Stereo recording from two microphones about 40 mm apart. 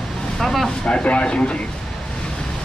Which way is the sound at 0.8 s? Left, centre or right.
Left.